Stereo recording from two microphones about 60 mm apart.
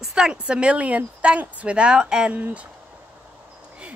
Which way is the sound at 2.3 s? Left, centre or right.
Right.